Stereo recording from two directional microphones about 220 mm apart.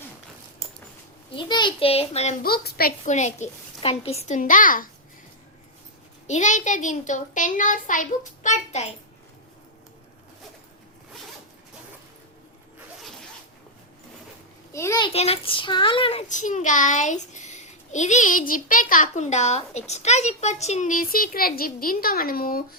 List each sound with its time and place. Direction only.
1.4 s a child's voice: 20° left (ahead or behind)
2.4 s a woman's voice: 45° left (ahead or behind)
3.0 s a child's voice: 35° left (ahead or behind)
6.2 s a child's voice: 35° left (ahead or behind)
14.7 s a child's voice: 15° left (ahead or behind); by 22.6 s 40° left (ahead or behind)